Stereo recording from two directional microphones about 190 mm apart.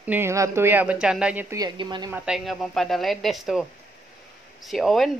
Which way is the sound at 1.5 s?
20° right (ahead or behind).